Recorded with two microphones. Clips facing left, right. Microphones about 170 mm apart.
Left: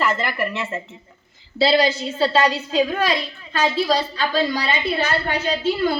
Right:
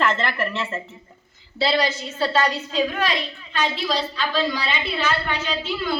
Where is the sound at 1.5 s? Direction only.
30° left (ahead or behind).